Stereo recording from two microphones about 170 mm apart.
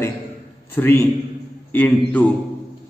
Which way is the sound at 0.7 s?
15° left (ahead or behind).